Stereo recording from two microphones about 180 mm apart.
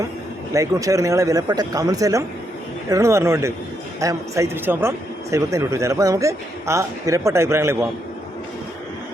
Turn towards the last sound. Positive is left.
turn(degrees=-15)  # may be behind; listen again after turning